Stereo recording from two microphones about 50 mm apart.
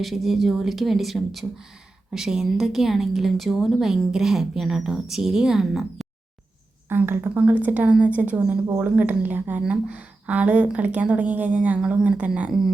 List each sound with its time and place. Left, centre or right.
0.0 s a woman's voice: centre
6.8 s a sound: right
7.3 s a woman's voice: right
12.5 s speech: centre